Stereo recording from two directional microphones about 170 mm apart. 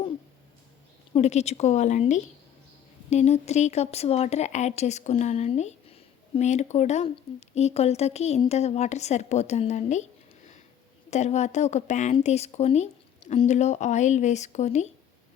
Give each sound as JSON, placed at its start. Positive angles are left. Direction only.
{"t": 1.1, "sound": "speech", "side_deg": 40}